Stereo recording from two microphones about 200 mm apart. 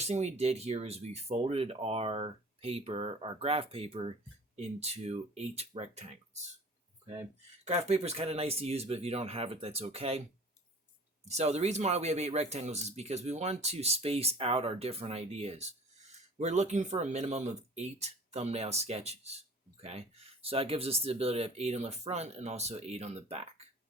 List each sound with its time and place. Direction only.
0.0 s speech: 35° right (ahead or behind)
7.7 s speech: 30° right (ahead or behind)
11.3 s speech: 35° right (ahead or behind)